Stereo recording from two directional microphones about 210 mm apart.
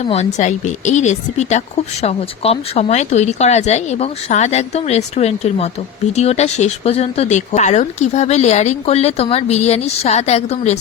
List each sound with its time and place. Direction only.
0.0 s speech: 30° left (ahead or behind)